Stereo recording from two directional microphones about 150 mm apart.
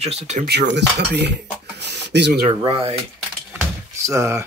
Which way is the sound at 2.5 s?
40° right (ahead or behind).